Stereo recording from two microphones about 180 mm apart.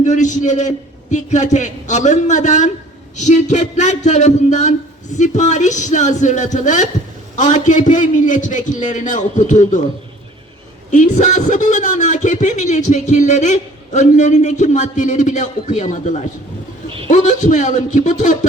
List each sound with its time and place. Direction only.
0.0 s a man's voice: 40° left (ahead or behind)
10.9 s a man's voice: 40° left (ahead or behind)